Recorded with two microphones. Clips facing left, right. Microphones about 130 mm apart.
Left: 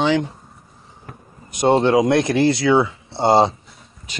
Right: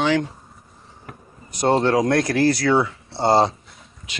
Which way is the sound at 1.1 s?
Centre (ahead or behind).